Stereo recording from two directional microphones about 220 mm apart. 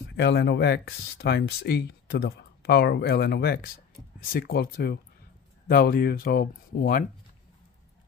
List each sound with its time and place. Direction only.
0.0 s speech: 50° left (ahead or behind)